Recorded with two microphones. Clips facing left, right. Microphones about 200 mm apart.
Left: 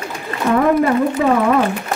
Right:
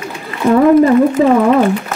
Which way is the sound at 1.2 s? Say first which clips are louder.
Right 5 dB; 30° right (ahead or behind).